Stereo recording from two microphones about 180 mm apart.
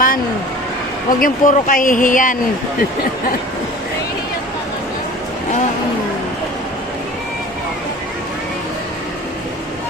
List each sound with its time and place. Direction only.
1.2 s speech: 50° left (ahead or behind)